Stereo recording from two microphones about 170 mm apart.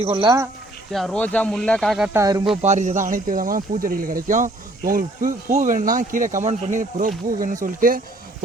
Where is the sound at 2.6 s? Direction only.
45° right (ahead or behind).